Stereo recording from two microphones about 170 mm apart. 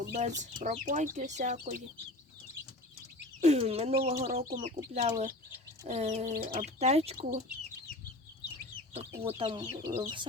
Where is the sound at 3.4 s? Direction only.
40° right (ahead or behind).